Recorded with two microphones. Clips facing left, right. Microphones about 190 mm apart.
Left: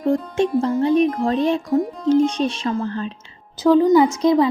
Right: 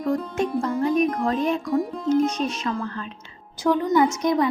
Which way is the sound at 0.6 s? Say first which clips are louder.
Left 3 dB; 30° left (ahead or behind).